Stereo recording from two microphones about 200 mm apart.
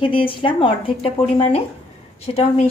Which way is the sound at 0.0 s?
25° left (ahead or behind).